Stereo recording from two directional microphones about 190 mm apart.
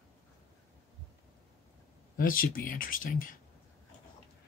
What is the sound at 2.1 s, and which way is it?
Speech, 50° left (ahead or behind).